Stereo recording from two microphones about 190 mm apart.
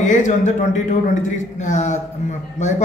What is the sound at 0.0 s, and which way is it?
A man's voice, 40° left (ahead or behind).